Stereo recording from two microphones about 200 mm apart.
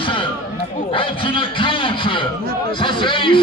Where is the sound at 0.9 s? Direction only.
25° left (ahead or behind).